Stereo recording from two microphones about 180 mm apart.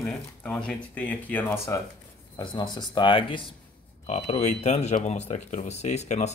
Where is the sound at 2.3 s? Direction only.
25° left (ahead or behind).